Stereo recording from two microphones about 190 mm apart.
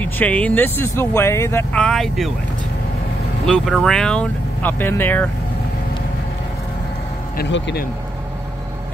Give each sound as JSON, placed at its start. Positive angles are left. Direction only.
{"t": 0.0, "sound": "speech", "side_deg": 10}
{"t": 3.4, "sound": "speech", "side_deg": 5}
{"t": 7.3, "sound": "speech", "side_deg": 70}